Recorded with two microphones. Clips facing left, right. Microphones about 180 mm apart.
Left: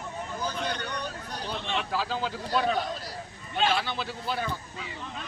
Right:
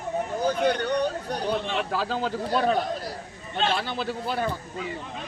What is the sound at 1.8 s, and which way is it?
Speech, 45° right (ahead or behind).